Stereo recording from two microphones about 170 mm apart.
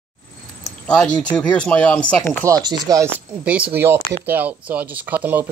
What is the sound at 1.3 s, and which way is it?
Speech, 5° left (ahead or behind).